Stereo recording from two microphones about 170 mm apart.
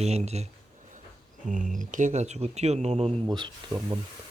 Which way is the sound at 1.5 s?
50° right (ahead or behind).